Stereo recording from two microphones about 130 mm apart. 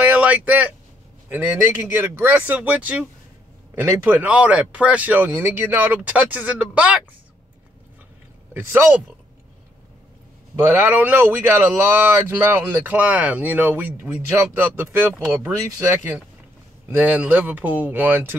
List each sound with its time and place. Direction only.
0.0 s a sound: 10° right (ahead or behind)
1.3 s speech: 15° right (ahead or behind)
8.5 s speech: 15° right (ahead or behind)
10.7 s speech: 15° right (ahead or behind)